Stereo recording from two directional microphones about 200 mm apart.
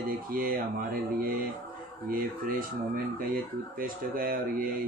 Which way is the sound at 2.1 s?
45° right (ahead or behind).